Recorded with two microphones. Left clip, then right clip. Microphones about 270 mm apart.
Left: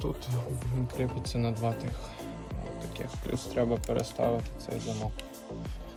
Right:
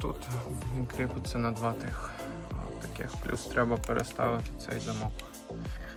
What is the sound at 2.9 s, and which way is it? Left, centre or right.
Speech, centre.